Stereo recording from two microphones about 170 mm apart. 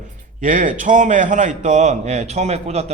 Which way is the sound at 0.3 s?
50° right (ahead or behind).